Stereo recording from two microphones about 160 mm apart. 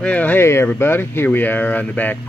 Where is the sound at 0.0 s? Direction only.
10° left (ahead or behind).